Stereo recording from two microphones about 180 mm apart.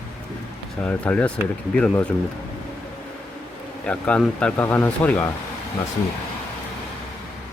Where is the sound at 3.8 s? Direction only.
5° left (ahead or behind).